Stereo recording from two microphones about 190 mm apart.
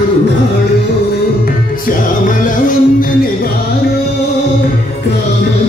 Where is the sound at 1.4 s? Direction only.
45° left (ahead or behind).